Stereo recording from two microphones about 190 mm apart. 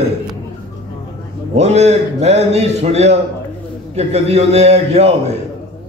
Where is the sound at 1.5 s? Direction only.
35° right (ahead or behind).